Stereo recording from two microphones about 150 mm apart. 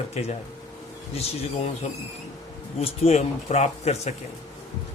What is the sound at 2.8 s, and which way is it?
Speech, 40° left (ahead or behind).